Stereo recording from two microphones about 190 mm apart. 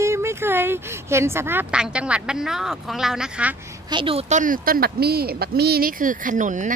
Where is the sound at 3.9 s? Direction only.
30° right (ahead or behind).